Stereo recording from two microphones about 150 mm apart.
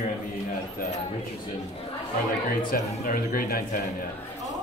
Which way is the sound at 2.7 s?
70° left (ahead or behind).